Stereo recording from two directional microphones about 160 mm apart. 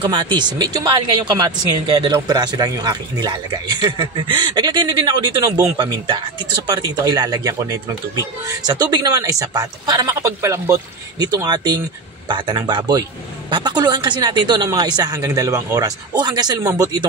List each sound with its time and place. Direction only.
0.0 s speech: 30° right (ahead or behind)